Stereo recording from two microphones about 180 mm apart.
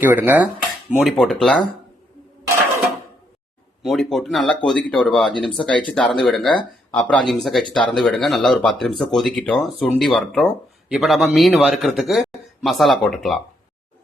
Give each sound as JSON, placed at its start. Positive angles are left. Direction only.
{"t": 0.0, "sound": "a man's voice", "side_deg": -10}
{"t": 3.8, "sound": "a man's voice", "side_deg": 0}